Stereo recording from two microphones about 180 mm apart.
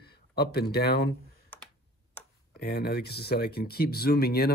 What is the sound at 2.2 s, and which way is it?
Tick-tock, 10° left (ahead or behind).